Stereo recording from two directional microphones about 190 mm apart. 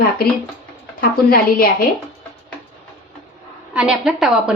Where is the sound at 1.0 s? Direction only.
50° left (ahead or behind).